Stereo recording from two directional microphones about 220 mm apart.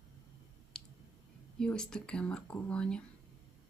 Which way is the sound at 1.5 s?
5° left (ahead or behind).